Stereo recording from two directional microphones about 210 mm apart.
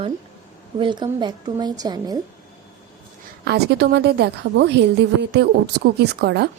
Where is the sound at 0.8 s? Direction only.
20° right (ahead or behind).